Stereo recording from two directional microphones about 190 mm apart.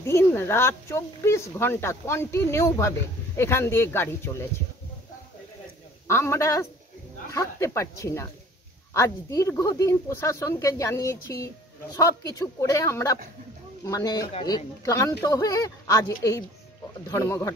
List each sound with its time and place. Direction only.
0.0 s speech: 15° left (ahead or behind)
6.0 s speech: 15° left (ahead or behind)